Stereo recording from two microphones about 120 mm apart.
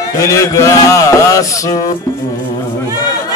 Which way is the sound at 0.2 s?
25° left (ahead or behind).